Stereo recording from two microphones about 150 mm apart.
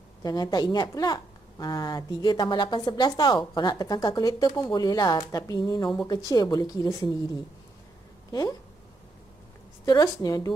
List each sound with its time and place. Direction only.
0.2 s speech: 25° left (ahead or behind)
8.3 s speech: 25° left (ahead or behind)
9.8 s speech: 25° left (ahead or behind)